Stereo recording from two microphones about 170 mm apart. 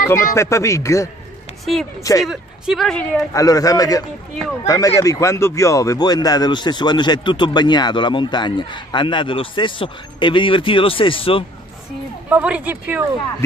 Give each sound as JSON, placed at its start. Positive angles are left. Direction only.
{"t": 0.1, "sound": "speech", "side_deg": 15}
{"t": 2.2, "sound": "speech", "side_deg": 0}
{"t": 3.3, "sound": "speech", "side_deg": 20}
{"t": 12.3, "sound": "speech", "side_deg": -10}